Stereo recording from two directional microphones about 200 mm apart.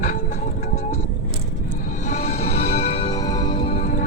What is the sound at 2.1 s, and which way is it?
Music, 30° left (ahead or behind).